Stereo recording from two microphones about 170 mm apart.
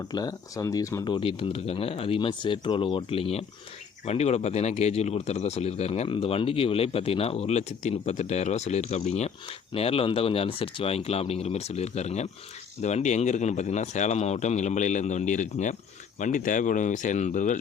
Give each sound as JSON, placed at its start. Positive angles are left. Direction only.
{"t": 0.0, "sound": "speech", "side_deg": 20}